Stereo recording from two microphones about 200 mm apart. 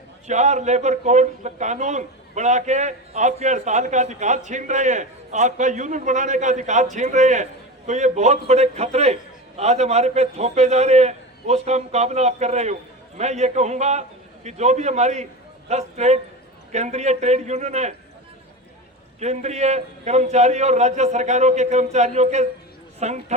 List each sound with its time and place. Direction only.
0.3 s a man's voice: 35° right (ahead or behind)
19.2 s a man's voice: 35° right (ahead or behind)